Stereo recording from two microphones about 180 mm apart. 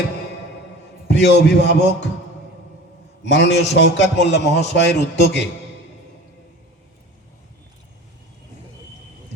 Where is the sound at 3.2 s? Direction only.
75° left (ahead or behind).